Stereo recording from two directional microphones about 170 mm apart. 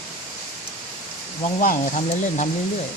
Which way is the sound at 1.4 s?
50° left (ahead or behind).